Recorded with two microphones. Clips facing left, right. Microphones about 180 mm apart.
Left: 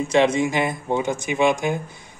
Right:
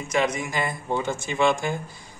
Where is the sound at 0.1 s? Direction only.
30° left (ahead or behind).